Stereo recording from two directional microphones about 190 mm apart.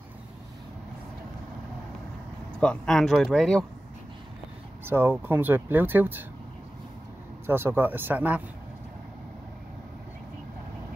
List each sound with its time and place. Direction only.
2.6 s speech: 5° left (ahead or behind)
4.8 s speech: 10° right (ahead or behind)
7.4 s speech: 10° right (ahead or behind)